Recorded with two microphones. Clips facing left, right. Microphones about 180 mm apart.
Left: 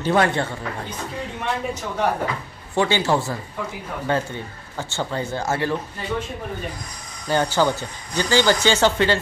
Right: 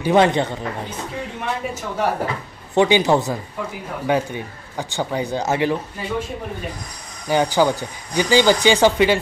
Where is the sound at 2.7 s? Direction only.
20° right (ahead or behind).